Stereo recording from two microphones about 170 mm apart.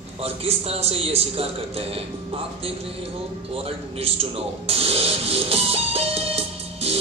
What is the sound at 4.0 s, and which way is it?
Music, 35° right (ahead or behind).